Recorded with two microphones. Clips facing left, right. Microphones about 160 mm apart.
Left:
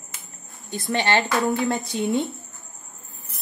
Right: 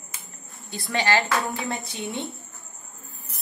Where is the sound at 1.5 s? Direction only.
Centre (ahead or behind).